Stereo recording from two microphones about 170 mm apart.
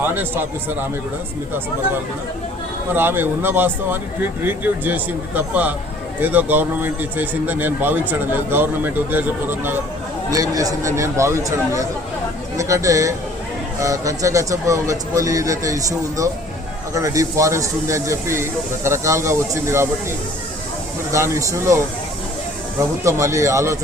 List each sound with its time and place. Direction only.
0.0 s speech: 10° right (ahead or behind)
2.9 s speech: 10° right (ahead or behind)
21.1 s speech: 15° right (ahead or behind)
23.0 s speech: 15° right (ahead or behind)